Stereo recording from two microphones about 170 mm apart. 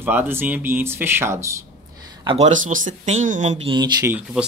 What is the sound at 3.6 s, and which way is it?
Speech, 25° right (ahead or behind).